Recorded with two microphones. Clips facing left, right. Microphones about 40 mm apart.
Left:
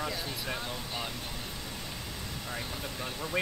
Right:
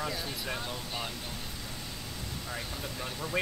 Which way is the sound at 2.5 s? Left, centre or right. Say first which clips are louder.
Left 1 dB; centre.